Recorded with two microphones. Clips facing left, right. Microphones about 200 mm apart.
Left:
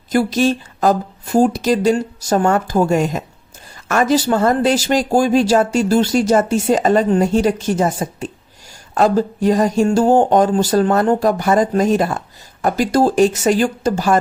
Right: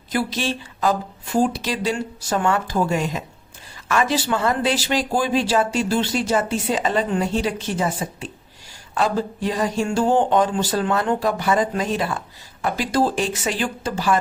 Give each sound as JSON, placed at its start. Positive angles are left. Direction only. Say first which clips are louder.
{"t": 0.1, "sound": "speech", "louder": "left 8 dB", "side_deg": 45}